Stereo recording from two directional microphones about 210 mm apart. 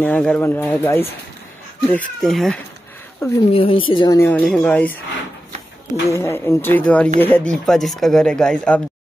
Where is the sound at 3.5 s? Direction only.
25° left (ahead or behind); by 4.9 s 5° left (ahead or behind).